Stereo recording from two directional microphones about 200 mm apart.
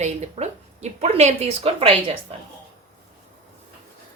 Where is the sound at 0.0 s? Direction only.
35° right (ahead or behind).